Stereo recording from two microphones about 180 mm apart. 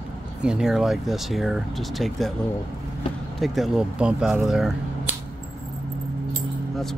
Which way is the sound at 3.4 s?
Centre (ahead or behind).